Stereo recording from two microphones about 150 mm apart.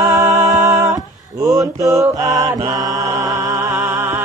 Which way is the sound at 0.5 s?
25° right (ahead or behind).